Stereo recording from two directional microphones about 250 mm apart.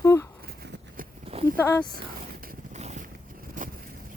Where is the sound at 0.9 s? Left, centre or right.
Right.